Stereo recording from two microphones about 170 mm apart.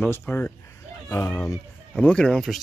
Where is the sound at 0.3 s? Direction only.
10° left (ahead or behind).